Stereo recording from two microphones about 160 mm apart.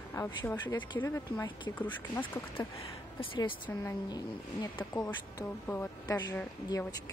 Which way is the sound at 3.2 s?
30° left (ahead or behind).